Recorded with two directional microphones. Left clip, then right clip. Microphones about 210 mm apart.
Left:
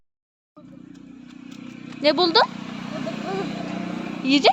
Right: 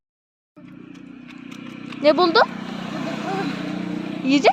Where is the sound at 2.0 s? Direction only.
Centre (ahead or behind).